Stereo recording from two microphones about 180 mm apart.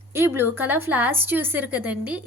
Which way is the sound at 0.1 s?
15° right (ahead or behind).